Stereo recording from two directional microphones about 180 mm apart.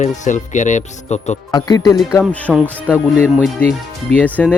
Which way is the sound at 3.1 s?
5° right (ahead or behind).